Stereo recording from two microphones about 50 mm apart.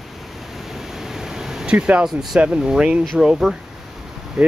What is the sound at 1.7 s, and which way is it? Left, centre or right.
Speech, right.